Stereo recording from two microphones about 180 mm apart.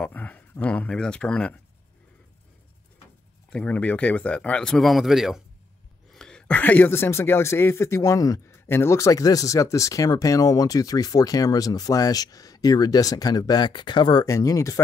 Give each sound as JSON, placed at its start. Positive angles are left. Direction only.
{"t": 0.0, "sound": "speech", "side_deg": 10}
{"t": 3.4, "sound": "speech", "side_deg": 5}